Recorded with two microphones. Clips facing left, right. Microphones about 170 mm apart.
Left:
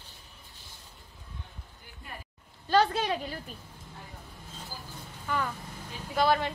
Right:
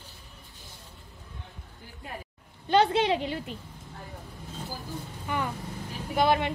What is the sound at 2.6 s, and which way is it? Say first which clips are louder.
Speech: right 3 dB; 20° right (ahead or behind).